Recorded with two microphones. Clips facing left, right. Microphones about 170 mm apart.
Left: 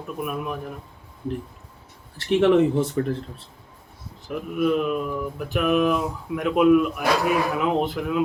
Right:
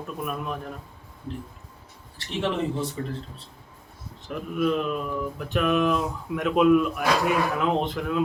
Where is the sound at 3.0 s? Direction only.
60° left (ahead or behind).